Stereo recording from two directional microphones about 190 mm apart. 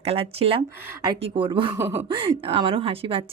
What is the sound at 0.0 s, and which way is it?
Speech, 30° right (ahead or behind).